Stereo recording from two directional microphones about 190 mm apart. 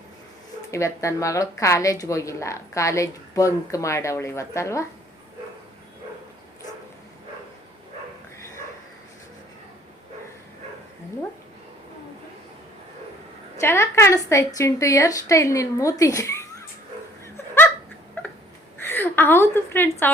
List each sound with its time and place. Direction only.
0.7 s a woman's voice: 15° left (ahead or behind)
13.6 s a woman's voice: 15° left (ahead or behind)
18.9 s a woman's voice: 10° left (ahead or behind)